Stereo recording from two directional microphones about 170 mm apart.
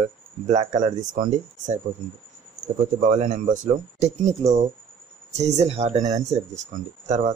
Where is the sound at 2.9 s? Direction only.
50° right (ahead or behind).